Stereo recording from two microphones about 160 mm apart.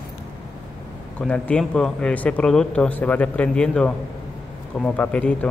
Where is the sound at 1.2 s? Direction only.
10° left (ahead or behind).